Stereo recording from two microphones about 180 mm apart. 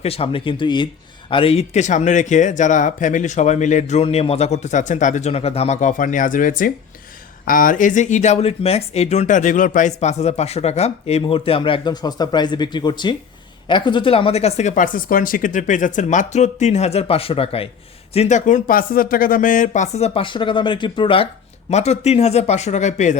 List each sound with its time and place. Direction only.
0.0 s speech: 30° left (ahead or behind)